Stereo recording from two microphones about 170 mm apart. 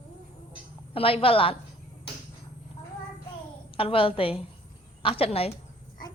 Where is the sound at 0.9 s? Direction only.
35° left (ahead or behind).